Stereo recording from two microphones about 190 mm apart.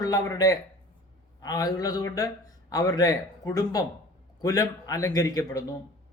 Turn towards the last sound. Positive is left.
turn(degrees=20)  # may be behind; listen again after turning